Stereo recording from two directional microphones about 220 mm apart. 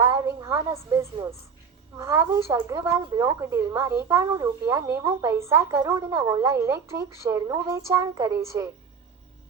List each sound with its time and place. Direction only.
0.0 s speech: 15° right (ahead or behind)